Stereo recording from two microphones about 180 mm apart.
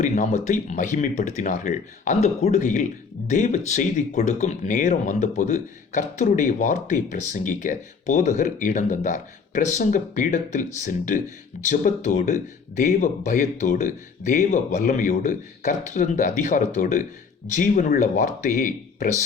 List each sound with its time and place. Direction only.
0.0 s speech: 40° left (ahead or behind)